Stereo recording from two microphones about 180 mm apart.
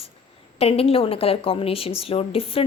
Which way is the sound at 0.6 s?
30° left (ahead or behind).